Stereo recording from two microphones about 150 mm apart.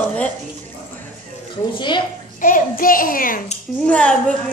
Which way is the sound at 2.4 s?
65° left (ahead or behind).